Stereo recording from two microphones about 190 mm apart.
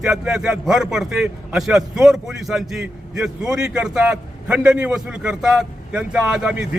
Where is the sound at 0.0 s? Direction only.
5° right (ahead or behind).